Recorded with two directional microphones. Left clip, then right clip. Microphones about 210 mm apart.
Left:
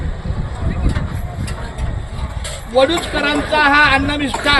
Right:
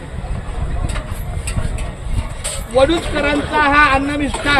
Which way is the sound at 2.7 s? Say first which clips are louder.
Even; 55° left (ahead or behind).